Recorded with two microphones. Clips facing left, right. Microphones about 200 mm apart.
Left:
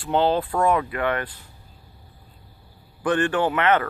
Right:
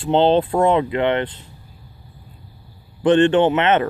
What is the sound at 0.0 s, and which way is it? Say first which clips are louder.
Speech: right 6 dB; 25° right (ahead or behind).